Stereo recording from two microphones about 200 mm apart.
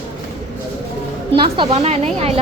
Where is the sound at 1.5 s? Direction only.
30° right (ahead or behind).